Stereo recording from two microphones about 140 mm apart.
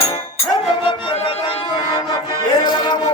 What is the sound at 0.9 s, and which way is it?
Music, 45° left (ahead or behind).